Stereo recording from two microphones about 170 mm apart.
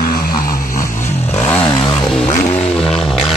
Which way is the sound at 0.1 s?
55° left (ahead or behind).